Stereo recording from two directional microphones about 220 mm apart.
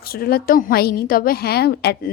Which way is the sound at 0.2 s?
45° left (ahead or behind).